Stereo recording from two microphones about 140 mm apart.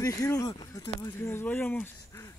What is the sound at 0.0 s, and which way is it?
Speech, 20° left (ahead or behind).